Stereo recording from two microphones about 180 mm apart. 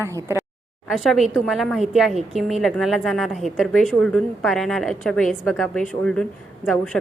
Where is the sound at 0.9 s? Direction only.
Centre (ahead or behind).